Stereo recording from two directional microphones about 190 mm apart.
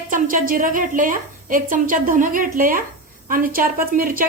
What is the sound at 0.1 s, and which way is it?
A woman's voice, 45° right (ahead or behind).